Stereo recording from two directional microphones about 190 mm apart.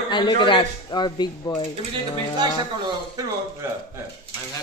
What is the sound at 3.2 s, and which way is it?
Speech, 20° right (ahead or behind).